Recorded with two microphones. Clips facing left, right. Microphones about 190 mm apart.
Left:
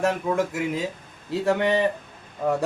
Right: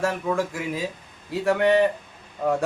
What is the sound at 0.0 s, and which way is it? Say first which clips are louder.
Speech: left 1 dB; 20° left (ahead or behind).